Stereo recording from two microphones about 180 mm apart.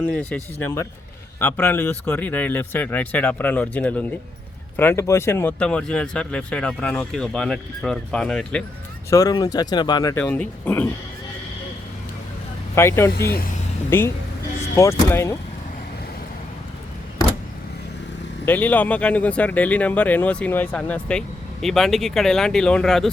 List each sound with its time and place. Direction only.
0.1 s speech: 10° left (ahead or behind)
9.0 s speech: 20° left (ahead or behind)
12.7 s speech: 15° left (ahead or behind)
13.1 s speech: 60° left (ahead or behind)
13.9 s speech: 10° left (ahead or behind)
18.4 s speech: 10° left (ahead or behind)